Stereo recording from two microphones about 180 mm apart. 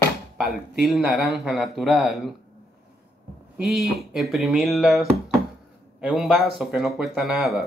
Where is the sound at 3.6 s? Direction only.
Centre (ahead or behind).